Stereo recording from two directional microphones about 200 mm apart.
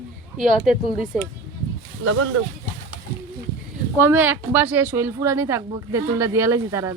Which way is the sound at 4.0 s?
10° right (ahead or behind).